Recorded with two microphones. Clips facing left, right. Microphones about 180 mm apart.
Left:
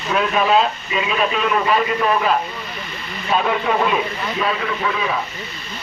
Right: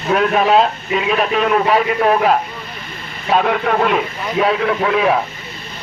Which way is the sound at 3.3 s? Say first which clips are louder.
Right 3 dB; 70° right (ahead or behind).